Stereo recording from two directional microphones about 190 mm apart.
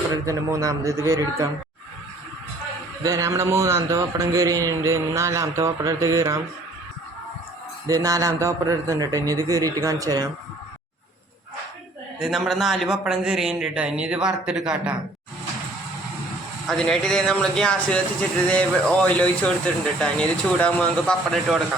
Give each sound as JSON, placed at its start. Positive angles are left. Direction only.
{"t": 0.3, "sound": "a man's voice", "side_deg": -15}
{"t": 3.0, "sound": "a man's voice", "side_deg": -15}
{"t": 8.0, "sound": "a man's voice", "side_deg": -20}
{"t": 12.2, "sound": "speech", "side_deg": 0}
{"t": 16.6, "sound": "speech", "side_deg": 5}